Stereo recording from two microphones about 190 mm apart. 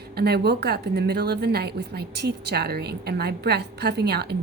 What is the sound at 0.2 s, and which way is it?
A woman's voice, 60° right (ahead or behind).